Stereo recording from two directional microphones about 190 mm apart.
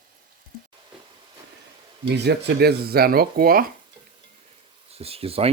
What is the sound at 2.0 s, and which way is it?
Speech, 60° right (ahead or behind).